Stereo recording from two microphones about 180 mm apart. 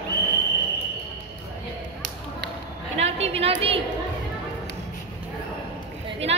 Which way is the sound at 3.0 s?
35° right (ahead or behind).